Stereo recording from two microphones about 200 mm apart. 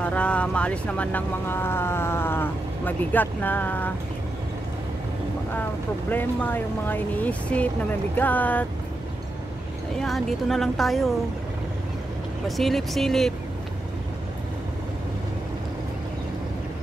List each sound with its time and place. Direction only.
0.0 s speech: 5° left (ahead or behind)
6.0 s speech: 10° left (ahead or behind)
9.9 s speech: centre (ahead or behind)
12.4 s speech: centre (ahead or behind)